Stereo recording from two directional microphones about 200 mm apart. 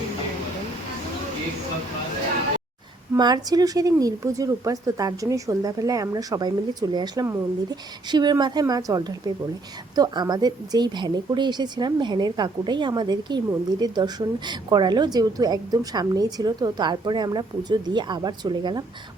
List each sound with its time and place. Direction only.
3.2 s a woman's voice: 20° right (ahead or behind)